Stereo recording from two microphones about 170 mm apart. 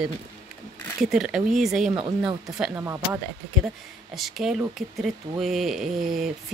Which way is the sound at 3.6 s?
Centre (ahead or behind).